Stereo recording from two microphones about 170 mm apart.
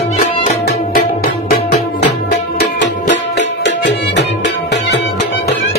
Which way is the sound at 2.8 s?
90° left.